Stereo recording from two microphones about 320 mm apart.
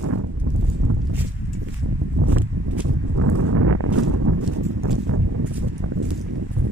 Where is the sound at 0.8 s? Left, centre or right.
Right.